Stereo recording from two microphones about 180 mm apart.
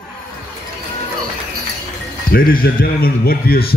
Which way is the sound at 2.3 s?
55° left (ahead or behind).